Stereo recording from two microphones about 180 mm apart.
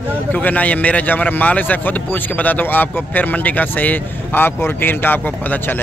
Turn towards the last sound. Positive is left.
turn(degrees=10)  # may be behind; listen again after turning